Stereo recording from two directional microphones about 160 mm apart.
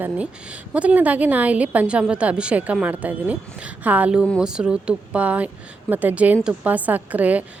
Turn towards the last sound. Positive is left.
turn(degrees=-10)  # may be behind; listen again after turning